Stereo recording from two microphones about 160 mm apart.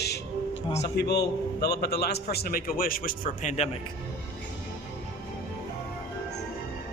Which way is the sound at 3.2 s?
45° left (ahead or behind).